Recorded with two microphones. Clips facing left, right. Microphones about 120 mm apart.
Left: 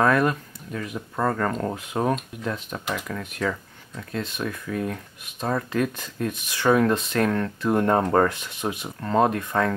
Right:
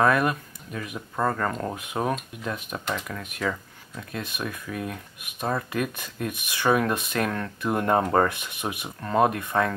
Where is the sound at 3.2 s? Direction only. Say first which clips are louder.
Left 2 dB; 15° right (ahead or behind).